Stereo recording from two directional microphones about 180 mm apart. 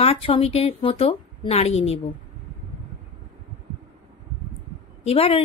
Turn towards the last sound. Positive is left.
turn(degrees=35)  # may be behind; listen again after turning